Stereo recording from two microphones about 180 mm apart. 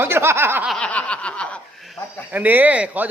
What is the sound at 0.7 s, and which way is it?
Speech, 5° left (ahead or behind).